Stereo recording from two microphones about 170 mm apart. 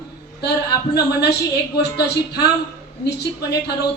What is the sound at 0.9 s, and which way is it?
Speech, 75° left (ahead or behind).